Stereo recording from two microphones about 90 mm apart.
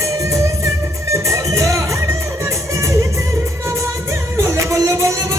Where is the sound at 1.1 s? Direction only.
35° right (ahead or behind).